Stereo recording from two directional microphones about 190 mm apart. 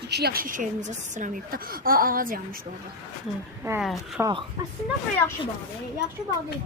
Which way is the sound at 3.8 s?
Centre (ahead or behind).